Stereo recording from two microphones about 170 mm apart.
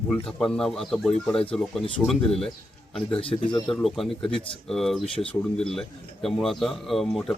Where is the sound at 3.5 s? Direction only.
Centre (ahead or behind).